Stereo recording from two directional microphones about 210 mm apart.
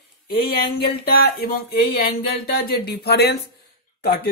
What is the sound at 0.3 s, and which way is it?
Speech, 45° left (ahead or behind).